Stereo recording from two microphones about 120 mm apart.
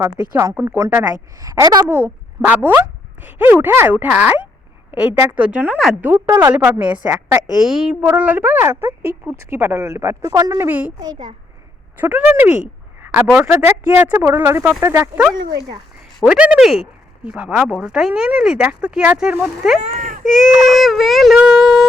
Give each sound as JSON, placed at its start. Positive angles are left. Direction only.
{"t": 0.0, "sound": "speech", "side_deg": -25}
{"t": 1.9, "sound": "speech", "side_deg": -20}
{"t": 6.6, "sound": "speech", "side_deg": -10}
{"t": 7.7, "sound": "speech", "side_deg": -5}
{"t": 8.1, "sound": "speech", "side_deg": -15}
{"t": 10.7, "sound": "speech", "side_deg": -10}
{"t": 11.0, "sound": "a child's voice", "side_deg": -35}
{"t": 11.9, "sound": "speech", "side_deg": -15}